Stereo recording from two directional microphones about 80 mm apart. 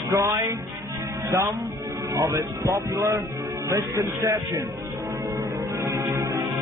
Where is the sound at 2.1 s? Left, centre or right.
Right.